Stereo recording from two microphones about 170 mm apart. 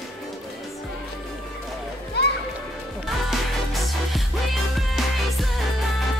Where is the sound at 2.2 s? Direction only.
75° left (ahead or behind).